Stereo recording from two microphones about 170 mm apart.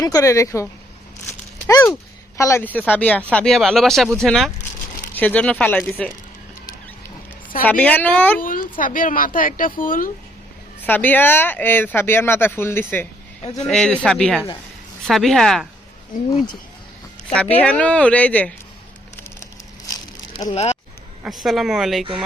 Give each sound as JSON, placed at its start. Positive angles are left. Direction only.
{"t": 0.0, "sound": "speech", "side_deg": 20}
{"t": 7.6, "sound": "speech", "side_deg": 10}
{"t": 8.4, "sound": "a sound", "side_deg": 55}
{"t": 8.8, "sound": "a woman's voice", "side_deg": 50}
{"t": 10.8, "sound": "speech", "side_deg": 10}
{"t": 17.2, "sound": "speech", "side_deg": 5}
{"t": 20.5, "sound": "speech", "side_deg": 40}
{"t": 21.2, "sound": "speech", "side_deg": 0}